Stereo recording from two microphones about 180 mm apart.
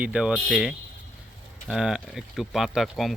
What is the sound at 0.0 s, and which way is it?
Speech, 5° right (ahead or behind).